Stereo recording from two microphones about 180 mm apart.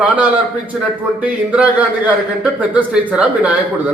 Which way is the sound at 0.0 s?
10° right (ahead or behind).